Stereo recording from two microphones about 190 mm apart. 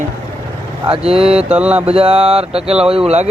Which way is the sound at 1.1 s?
30° right (ahead or behind).